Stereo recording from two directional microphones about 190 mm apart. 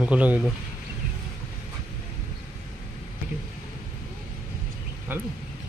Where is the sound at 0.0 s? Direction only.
5° right (ahead or behind).